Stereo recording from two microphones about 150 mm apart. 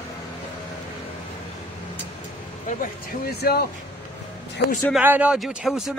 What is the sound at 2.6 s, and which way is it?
Speech, 75° left (ahead or behind).